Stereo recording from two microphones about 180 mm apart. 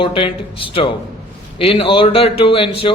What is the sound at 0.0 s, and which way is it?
A man's voice, 30° left (ahead or behind).